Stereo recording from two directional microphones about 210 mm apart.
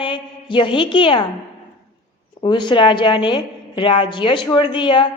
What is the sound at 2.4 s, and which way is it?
A woman's voice, 20° left (ahead or behind).